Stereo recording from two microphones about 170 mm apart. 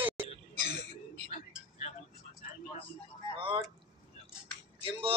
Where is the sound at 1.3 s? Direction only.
40° left (ahead or behind).